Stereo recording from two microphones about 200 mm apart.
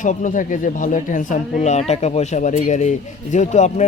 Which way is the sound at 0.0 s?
40° left (ahead or behind).